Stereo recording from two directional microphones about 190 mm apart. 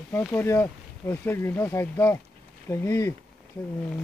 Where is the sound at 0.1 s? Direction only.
10° left (ahead or behind).